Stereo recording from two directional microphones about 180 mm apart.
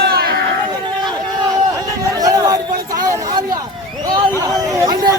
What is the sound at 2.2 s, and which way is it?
Chatter, 20° right (ahead or behind).